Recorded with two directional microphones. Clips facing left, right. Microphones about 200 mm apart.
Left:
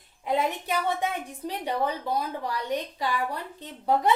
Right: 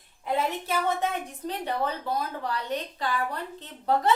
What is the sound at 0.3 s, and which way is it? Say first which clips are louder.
A woman's voice: left 1 dB; 15° left (ahead or behind).